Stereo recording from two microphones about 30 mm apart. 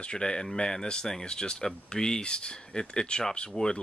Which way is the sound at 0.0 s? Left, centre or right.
Left.